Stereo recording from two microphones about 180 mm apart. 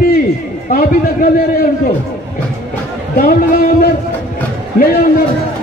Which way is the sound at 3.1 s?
55° left (ahead or behind).